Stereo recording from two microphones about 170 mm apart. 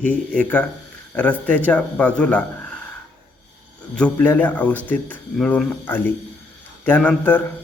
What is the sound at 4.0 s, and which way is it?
A man's voice, 10° left (ahead or behind).